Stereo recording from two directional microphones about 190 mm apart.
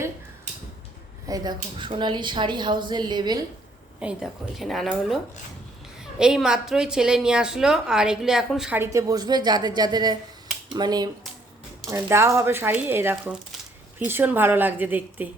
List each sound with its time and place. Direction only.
1.3 s speech: 25° right (ahead or behind)
4.0 s a woman's voice: centre (ahead or behind)